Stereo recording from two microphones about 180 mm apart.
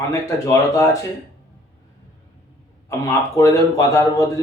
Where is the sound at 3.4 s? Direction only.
15° left (ahead or behind).